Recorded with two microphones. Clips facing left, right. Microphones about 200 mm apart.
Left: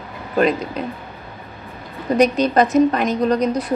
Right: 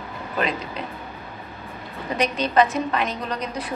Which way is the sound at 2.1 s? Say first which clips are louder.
Left 6 dB; 40° left (ahead or behind).